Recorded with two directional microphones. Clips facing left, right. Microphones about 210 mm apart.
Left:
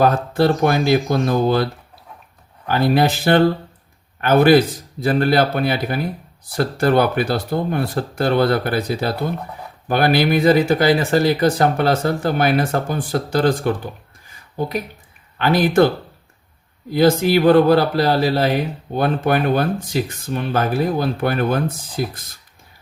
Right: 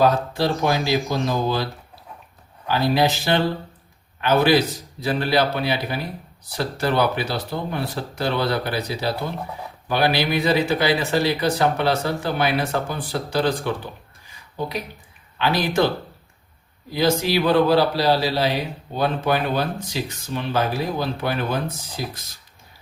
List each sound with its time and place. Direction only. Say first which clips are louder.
0.0 s speech: left 3 dB; 55° left (ahead or behind)
2.6 s speech: left 3 dB; 55° left (ahead or behind)
16.9 s speech: left 6 dB; 55° left (ahead or behind)